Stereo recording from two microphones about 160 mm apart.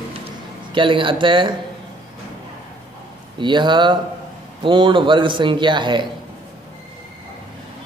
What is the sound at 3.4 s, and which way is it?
A man's voice, 30° right (ahead or behind).